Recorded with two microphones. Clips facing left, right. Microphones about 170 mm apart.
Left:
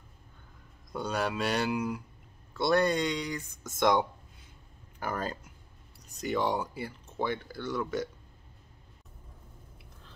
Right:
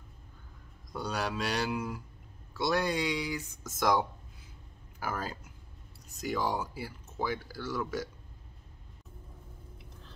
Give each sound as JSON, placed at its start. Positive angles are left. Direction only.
{"t": 0.9, "sound": "speech", "side_deg": 0}